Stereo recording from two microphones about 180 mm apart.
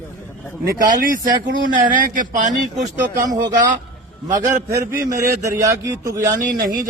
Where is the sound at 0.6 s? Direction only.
50° right (ahead or behind).